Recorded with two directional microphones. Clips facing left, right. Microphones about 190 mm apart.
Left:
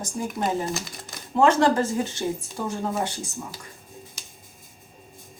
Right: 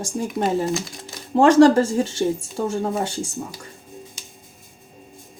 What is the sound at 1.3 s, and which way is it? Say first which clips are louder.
Speech: right 7 dB; 35° right (ahead or behind).